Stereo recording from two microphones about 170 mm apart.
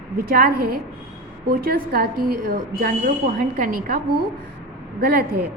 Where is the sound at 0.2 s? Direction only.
60° right (ahead or behind).